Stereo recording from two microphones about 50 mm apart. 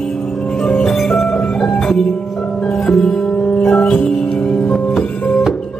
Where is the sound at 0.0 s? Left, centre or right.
Centre.